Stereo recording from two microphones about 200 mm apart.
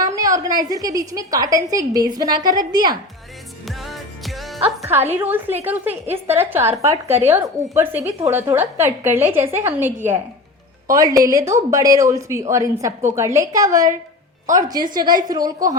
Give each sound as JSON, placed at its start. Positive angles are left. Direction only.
{"t": 0.0, "sound": "a sound", "side_deg": -15}
{"t": 0.6, "sound": "a woman's voice", "side_deg": -20}
{"t": 3.7, "sound": "music", "side_deg": 0}
{"t": 4.8, "sound": "a woman's voice", "side_deg": -10}